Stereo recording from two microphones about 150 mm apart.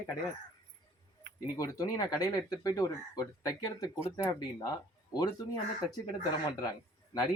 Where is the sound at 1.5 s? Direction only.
20° left (ahead or behind).